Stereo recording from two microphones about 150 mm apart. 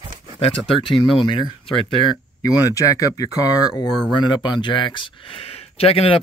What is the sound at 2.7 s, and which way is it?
Speech, 25° left (ahead or behind).